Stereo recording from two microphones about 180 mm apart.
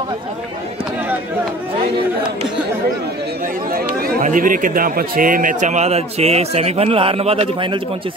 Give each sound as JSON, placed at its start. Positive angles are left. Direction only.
{"t": 3.7, "sound": "a man's voice", "side_deg": -50}